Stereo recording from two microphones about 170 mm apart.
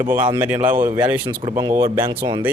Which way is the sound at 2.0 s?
30° right (ahead or behind).